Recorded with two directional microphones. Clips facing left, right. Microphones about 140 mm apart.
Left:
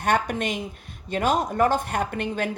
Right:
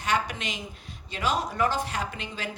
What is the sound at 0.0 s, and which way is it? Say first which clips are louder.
A woman's voice: left 5 dB; 55° left (ahead or behind).